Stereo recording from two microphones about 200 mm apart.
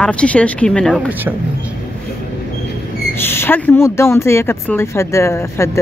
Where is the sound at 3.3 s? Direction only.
10° left (ahead or behind).